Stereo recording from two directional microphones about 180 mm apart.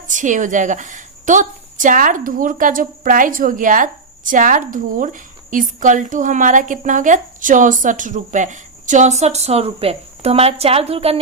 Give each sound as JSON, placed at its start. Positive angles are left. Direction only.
{"t": 0.1, "sound": "a woman's voice", "side_deg": -45}